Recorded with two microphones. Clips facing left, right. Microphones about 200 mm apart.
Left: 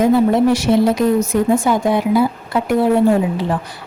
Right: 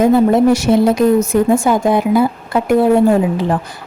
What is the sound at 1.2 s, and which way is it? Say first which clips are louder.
Speech: right 2 dB; 45° right (ahead or behind).